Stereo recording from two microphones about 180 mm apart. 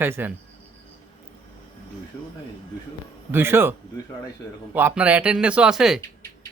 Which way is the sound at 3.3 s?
10° right (ahead or behind).